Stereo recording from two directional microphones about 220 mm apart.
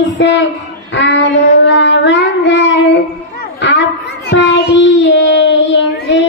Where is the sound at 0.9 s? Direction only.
50° left (ahead or behind).